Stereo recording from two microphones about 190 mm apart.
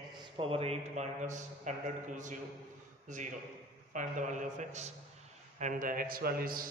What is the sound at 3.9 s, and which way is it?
A man's voice, 40° right (ahead or behind).